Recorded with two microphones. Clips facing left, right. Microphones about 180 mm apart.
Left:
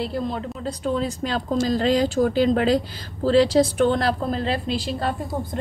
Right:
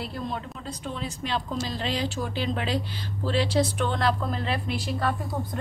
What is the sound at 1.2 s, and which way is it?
A woman's voice, 40° left (ahead or behind).